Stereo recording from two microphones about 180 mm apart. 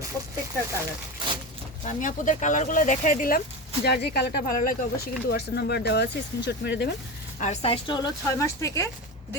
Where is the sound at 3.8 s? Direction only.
65° left (ahead or behind).